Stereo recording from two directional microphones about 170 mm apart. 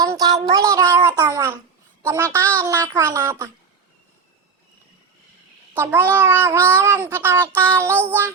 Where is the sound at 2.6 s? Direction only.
20° right (ahead or behind).